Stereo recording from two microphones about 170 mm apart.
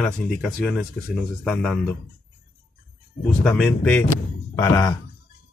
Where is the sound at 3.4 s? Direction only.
5° left (ahead or behind).